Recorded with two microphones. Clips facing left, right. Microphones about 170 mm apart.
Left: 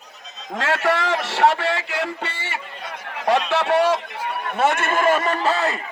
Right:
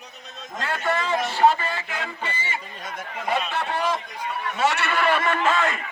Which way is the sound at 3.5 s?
75° left (ahead or behind).